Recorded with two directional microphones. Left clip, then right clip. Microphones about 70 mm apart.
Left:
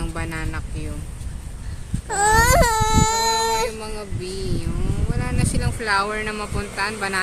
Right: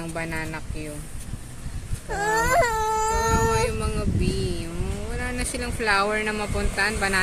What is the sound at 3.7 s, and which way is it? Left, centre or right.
Speech, right.